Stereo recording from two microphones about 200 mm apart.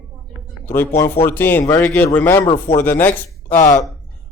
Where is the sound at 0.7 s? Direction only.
10° left (ahead or behind).